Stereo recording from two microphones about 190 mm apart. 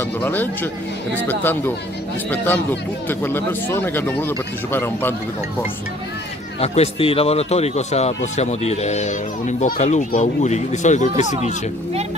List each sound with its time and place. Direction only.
0.2 s speech: 10° left (ahead or behind)
2.4 s speech: 10° left (ahead or behind)
6.6 s speech: 35° left (ahead or behind)